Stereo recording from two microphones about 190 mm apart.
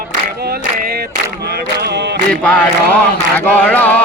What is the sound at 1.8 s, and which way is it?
Chant, 60° right (ahead or behind).